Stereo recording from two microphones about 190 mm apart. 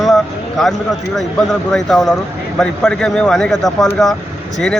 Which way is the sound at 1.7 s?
Centre (ahead or behind).